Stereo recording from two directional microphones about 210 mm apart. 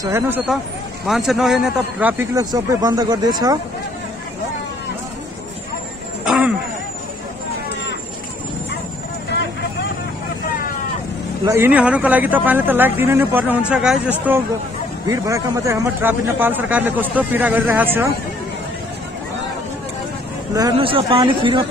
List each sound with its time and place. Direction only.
0.0 s a man's voice: 10° right (ahead or behind)
1.0 s a man's voice: centre (ahead or behind); by 3.5 s 20° right (ahead or behind)
6.2 s a sound: 5° right (ahead or behind)
11.4 s a man's voice: 10° right (ahead or behind)
20.5 s speech: 20° right (ahead or behind)